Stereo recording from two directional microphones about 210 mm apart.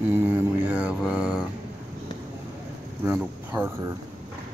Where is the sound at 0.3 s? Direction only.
5° right (ahead or behind).